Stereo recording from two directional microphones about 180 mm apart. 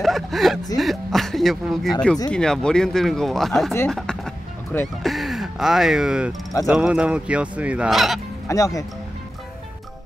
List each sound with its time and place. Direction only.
0.0 s a sound: centre (ahead or behind)
0.7 s speech: centre (ahead or behind)
8.5 s speech: 20° left (ahead or behind)